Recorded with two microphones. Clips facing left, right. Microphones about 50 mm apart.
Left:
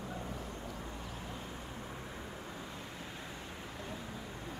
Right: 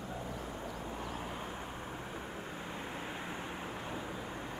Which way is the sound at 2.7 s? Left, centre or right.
Right.